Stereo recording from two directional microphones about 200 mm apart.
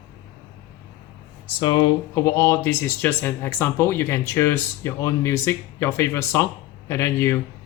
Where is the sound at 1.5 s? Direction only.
20° left (ahead or behind).